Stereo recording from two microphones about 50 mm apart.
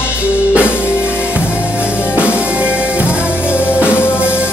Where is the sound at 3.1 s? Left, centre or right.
Left.